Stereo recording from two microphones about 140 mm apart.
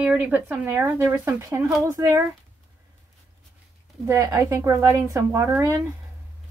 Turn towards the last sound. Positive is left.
turn(degrees=-20)  # may be behind; listen again after turning